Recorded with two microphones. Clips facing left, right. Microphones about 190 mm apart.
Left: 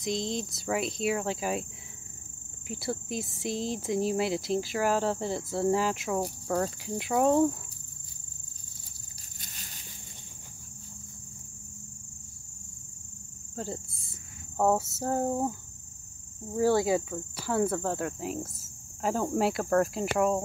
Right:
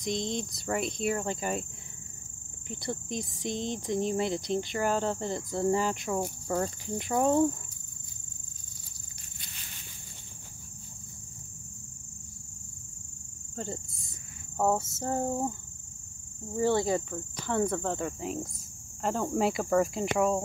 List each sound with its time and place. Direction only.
0.0 s speech: centre (ahead or behind)
2.7 s speech: 5° left (ahead or behind)
9.4 s a sound: 40° left (ahead or behind)
14.6 s speech: centre (ahead or behind)
16.5 s speech: 5° left (ahead or behind)